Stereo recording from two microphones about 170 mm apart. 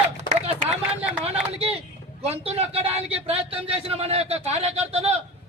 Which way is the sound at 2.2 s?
35° right (ahead or behind).